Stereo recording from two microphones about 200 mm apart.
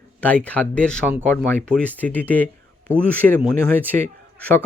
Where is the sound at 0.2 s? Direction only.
5° left (ahead or behind).